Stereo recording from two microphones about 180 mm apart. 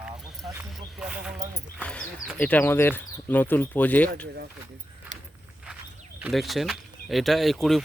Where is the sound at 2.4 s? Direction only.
10° left (ahead or behind).